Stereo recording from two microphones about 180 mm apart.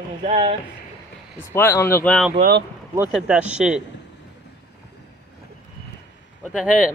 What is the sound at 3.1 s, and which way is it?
Speech, 5° right (ahead or behind).